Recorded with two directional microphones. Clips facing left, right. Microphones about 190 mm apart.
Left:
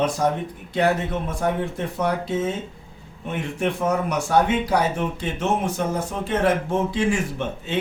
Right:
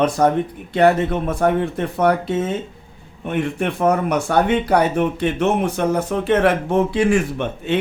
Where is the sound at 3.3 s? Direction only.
60° right (ahead or behind).